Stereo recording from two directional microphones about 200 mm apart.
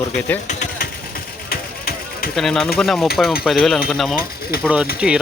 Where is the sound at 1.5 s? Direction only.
50° left (ahead or behind).